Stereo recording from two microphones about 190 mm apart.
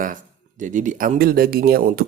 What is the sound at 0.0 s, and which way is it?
Speech, 45° right (ahead or behind).